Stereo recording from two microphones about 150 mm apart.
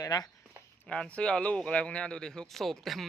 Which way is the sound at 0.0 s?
25° left (ahead or behind).